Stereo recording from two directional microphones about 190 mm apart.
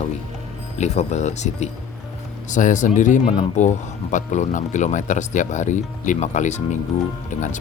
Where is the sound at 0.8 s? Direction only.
35° left (ahead or behind).